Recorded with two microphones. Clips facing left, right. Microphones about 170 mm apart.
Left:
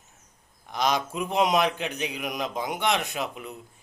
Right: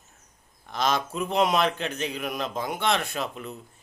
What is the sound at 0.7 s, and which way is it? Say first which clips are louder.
A man's voice: even; 15° left (ahead or behind).